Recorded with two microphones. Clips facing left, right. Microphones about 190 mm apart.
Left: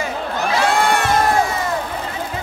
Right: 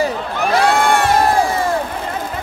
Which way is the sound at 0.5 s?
55° right (ahead or behind).